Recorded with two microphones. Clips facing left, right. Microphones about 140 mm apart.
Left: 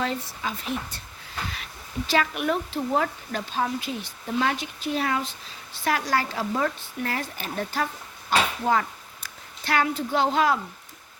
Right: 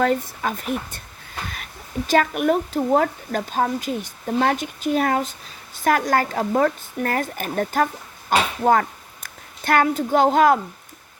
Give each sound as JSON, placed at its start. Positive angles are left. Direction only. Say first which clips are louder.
{"t": 0.0, "sound": "speech", "louder": "right 8 dB", "side_deg": -50}
{"t": 2.0, "sound": "a woman's voice", "louder": "right 6 dB", "side_deg": -50}